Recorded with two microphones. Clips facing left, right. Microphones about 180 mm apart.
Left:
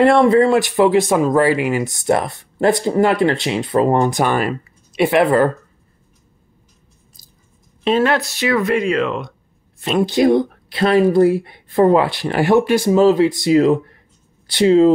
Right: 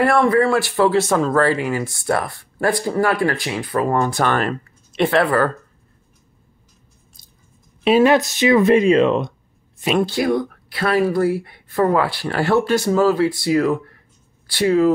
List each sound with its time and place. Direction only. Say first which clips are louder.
0.0 s speech: left 4 dB; 25° left (ahead or behind)
7.8 s speech: right 3 dB; 10° right (ahead or behind)
10.0 s speech: left 6 dB; 20° left (ahead or behind)